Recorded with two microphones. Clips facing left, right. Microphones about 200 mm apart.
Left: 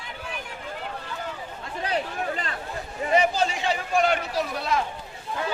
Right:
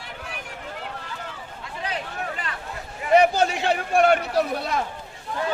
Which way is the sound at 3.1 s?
65° right (ahead or behind).